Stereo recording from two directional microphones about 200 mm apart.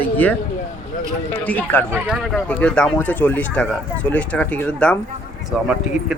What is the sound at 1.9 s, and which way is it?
Speech, 5° right (ahead or behind).